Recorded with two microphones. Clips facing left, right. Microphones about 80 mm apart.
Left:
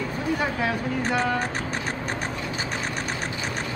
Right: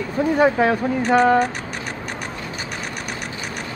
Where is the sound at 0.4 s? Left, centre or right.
Right.